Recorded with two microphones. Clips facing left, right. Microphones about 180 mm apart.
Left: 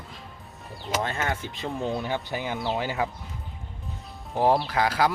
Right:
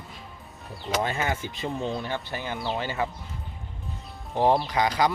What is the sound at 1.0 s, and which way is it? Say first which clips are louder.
Speech: right 2 dB; 10° right (ahead or behind).